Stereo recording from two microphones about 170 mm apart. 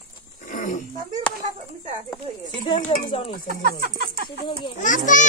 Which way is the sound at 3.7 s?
60° right (ahead or behind).